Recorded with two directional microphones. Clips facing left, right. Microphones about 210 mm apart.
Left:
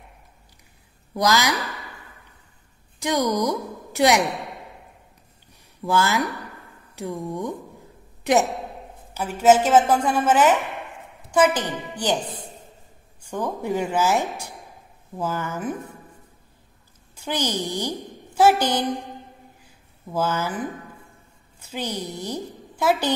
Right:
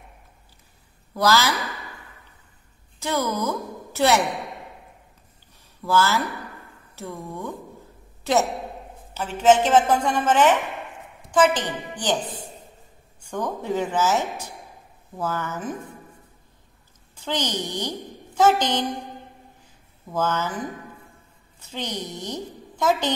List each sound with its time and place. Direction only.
1.1 s speech: 15° left (ahead or behind)
3.0 s a woman's voice: 15° left (ahead or behind)
5.9 s a woman's voice: 15° left (ahead or behind)
13.3 s speech: 10° left (ahead or behind)
17.1 s a woman's voice: 10° left (ahead or behind)
19.6 s a sound: 10° left (ahead or behind)
21.5 s a woman's voice: 10° left (ahead or behind)